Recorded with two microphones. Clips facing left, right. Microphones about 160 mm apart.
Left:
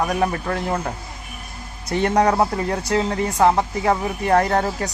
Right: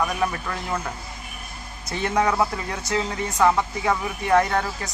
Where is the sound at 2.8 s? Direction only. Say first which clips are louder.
Left 3 dB; 55° left (ahead or behind).